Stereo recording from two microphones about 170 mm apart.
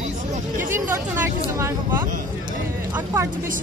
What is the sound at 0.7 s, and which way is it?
Speech, 15° right (ahead or behind).